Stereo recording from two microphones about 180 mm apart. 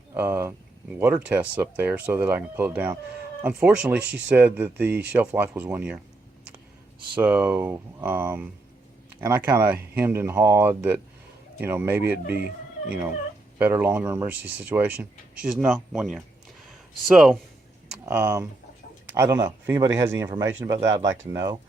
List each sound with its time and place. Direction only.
0.1 s speech: 10° right (ahead or behind)
7.2 s speech: 10° right (ahead or behind)